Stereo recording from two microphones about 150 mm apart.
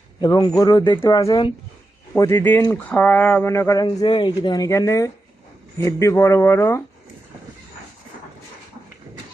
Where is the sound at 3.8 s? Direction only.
35° left (ahead or behind); by 6.8 s 15° left (ahead or behind).